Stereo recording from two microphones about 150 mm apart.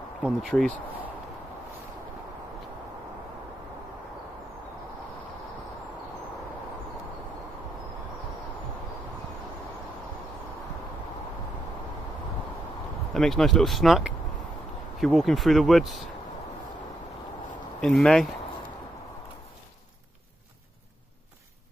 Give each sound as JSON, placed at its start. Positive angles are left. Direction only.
{"t": 0.2, "sound": "speech", "side_deg": 0}
{"t": 13.1, "sound": "speech", "side_deg": 0}
{"t": 17.7, "sound": "speech", "side_deg": 0}